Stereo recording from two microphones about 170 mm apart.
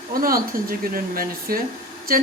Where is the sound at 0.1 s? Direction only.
60° right (ahead or behind).